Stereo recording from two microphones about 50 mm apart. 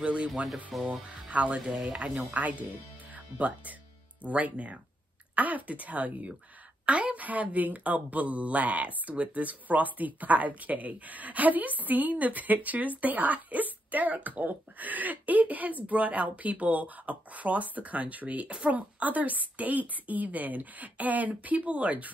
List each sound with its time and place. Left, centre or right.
0.0 s speech: right
0.3 s speech: centre
1.3 s a woman's voice: right